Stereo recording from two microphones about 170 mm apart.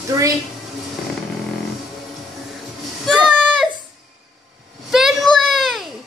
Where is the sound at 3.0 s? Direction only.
Centre (ahead or behind).